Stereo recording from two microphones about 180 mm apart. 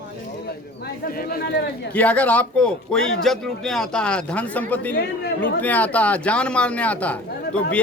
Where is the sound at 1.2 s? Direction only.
55° left (ahead or behind).